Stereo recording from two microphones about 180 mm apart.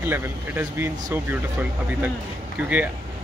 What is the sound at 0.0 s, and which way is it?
Speech, 10° right (ahead or behind).